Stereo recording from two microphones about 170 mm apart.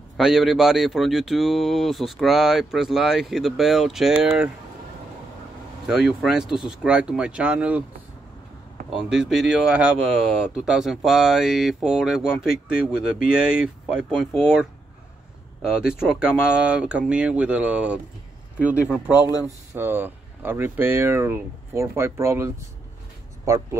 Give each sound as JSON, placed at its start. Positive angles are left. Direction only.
{"t": 0.2, "sound": "speech", "side_deg": 0}
{"t": 5.9, "sound": "speech", "side_deg": -5}
{"t": 8.9, "sound": "speech", "side_deg": -5}